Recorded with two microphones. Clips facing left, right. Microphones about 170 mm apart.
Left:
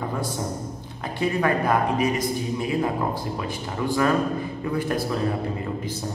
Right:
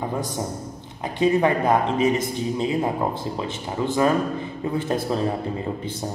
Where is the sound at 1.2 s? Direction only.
20° right (ahead or behind).